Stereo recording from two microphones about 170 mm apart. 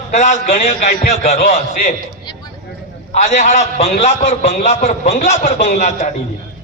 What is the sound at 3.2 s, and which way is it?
A man's voice, 45° left (ahead or behind).